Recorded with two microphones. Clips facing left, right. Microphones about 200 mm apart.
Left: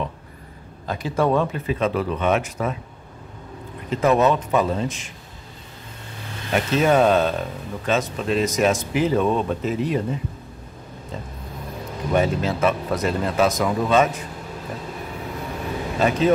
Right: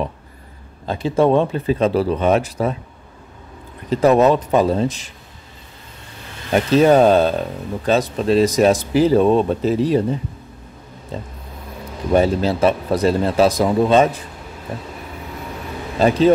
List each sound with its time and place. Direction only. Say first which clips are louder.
0.8 s speech: right 5 dB; 25° right (ahead or behind)
3.9 s speech: right 5 dB; 35° right (ahead or behind)
6.5 s speech: right 6 dB; 35° right (ahead or behind)
12.1 s speech: right 5 dB; 35° right (ahead or behind)
16.0 s speech: right 5 dB; 30° right (ahead or behind)